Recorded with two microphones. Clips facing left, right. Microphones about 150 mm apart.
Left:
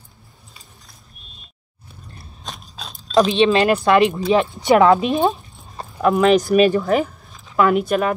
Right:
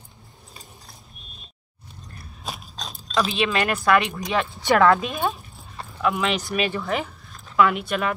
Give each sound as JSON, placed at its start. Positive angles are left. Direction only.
{"t": 2.4, "sound": "biting", "side_deg": -5}
{"t": 2.7, "sound": "a sound", "side_deg": 5}
{"t": 3.2, "sound": "speech", "side_deg": 35}
{"t": 5.8, "sound": "speech", "side_deg": 40}